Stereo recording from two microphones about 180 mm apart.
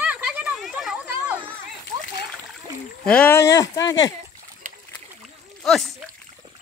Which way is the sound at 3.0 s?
5° left (ahead or behind).